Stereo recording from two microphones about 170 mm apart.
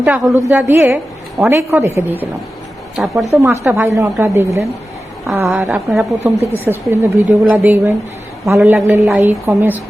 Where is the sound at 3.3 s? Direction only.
15° right (ahead or behind).